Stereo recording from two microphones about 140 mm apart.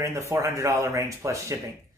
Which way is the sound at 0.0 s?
20° right (ahead or behind).